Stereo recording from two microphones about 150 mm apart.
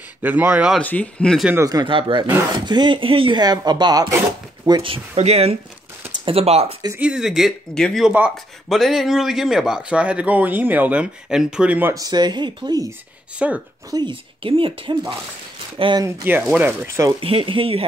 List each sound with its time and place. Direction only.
0.2 s speech: 10° right (ahead or behind)
0.7 s speech: 10° left (ahead or behind)
1.5 s speech: 20° right (ahead or behind); by 6.7 s 45° right (ahead or behind)
7.0 s speech: 5° right (ahead or behind)
11.9 s speech: 25° right (ahead or behind)
13.4 s speech: 5° right (ahead or behind)
13.8 s speech: 30° right (ahead or behind)
16.1 s speech: 10° right (ahead or behind)
17.2 s speech: 40° right (ahead or behind)